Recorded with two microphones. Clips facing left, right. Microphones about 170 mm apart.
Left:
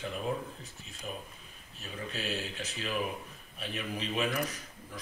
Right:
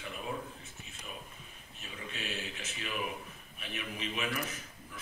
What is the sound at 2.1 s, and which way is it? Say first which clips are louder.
A man's voice: left 4 dB; 35° left (ahead or behind).